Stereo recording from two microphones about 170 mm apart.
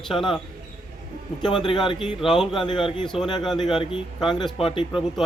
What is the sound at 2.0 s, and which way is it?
Speech, centre (ahead or behind).